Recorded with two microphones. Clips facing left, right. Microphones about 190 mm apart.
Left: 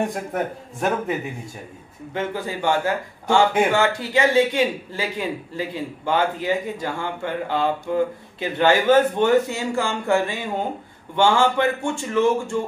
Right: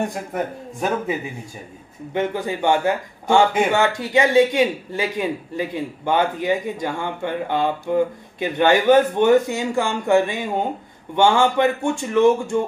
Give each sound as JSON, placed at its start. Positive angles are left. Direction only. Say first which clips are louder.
{"t": 0.0, "sound": "speech", "louder": "even", "side_deg": 0}
{"t": 2.1, "sound": "a man's voice", "louder": "right 4 dB", "side_deg": -20}